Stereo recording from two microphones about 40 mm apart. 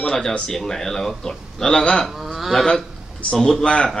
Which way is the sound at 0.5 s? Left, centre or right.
Centre.